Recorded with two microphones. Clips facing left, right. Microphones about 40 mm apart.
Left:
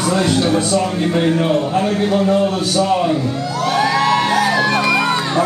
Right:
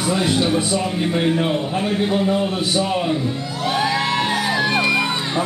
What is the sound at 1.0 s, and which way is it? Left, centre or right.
A man's voice, centre.